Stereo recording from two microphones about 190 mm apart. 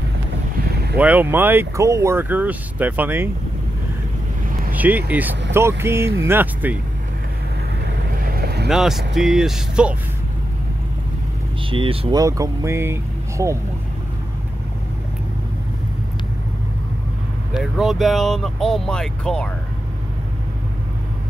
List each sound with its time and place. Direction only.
0.9 s speech: 10° right (ahead or behind)
4.7 s speech: 10° right (ahead or behind)
8.2 s vehicle: 50° right (ahead or behind)
8.6 s speech: centre (ahead or behind)
11.7 s speech: 30° right (ahead or behind)
17.6 s speech: centre (ahead or behind)